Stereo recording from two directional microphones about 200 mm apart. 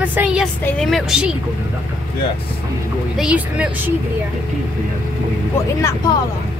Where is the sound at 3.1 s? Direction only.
5° right (ahead or behind).